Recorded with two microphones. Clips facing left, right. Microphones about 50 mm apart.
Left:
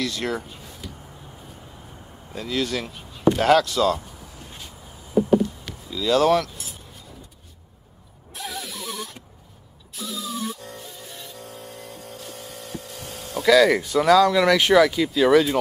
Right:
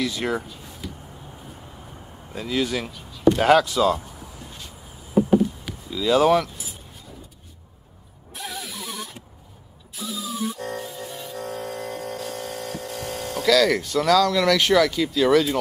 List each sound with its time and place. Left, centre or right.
0.0 s speech: centre
2.3 s speech: centre
2.9 s chop: left
3.3 s speech: centre
4.6 s a sound: centre
8.3 s a sound: centre
11.1 s music: centre
11.3 s a sound: right
13.4 s speech: centre